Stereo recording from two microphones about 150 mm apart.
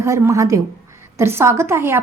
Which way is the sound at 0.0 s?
20° right (ahead or behind).